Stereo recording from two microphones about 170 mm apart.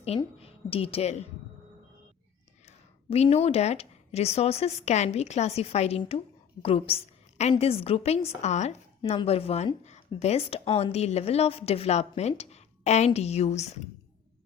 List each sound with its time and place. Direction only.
0.3 s speech: 35° left (ahead or behind)
2.6 s a woman's voice: 35° left (ahead or behind)